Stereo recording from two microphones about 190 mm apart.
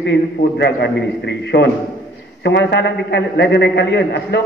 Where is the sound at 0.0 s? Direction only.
60° left (ahead or behind).